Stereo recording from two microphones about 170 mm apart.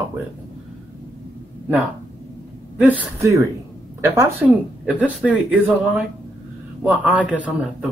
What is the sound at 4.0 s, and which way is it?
A woman's voice, 15° right (ahead or behind).